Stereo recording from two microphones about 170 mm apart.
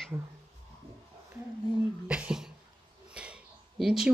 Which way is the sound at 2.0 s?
5° right (ahead or behind).